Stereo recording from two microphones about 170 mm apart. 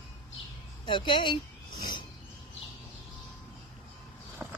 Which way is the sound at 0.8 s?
30° left (ahead or behind).